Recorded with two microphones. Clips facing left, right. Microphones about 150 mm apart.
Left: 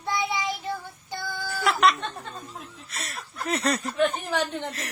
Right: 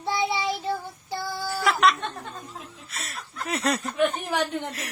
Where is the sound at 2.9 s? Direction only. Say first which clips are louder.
Left 1 dB; centre (ahead or behind).